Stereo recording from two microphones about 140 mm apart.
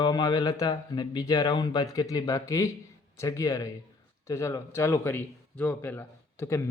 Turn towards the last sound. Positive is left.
turn(degrees=20)  # may be behind; listen again after turning